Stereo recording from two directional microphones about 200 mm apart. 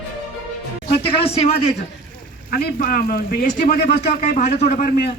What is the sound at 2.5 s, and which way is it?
A man's voice, 50° left (ahead or behind).